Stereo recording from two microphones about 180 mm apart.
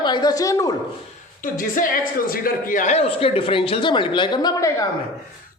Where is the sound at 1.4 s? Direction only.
50° left (ahead or behind); by 4.8 s 15° left (ahead or behind).